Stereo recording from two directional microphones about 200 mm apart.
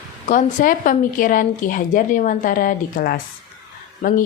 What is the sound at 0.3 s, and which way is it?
Speech, 40° left (ahead or behind).